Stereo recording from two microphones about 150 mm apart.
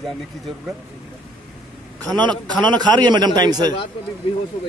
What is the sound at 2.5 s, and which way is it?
A man's voice, 30° right (ahead or behind).